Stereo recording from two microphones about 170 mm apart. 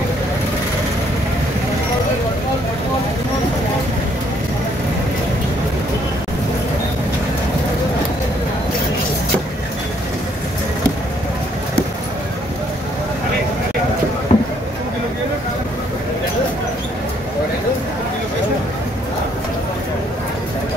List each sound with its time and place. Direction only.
14.3 s boat: 40° left (ahead or behind)